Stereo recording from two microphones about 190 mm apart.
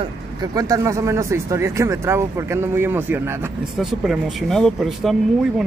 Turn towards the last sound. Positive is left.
turn(degrees=0)  # may be behind; listen again after turning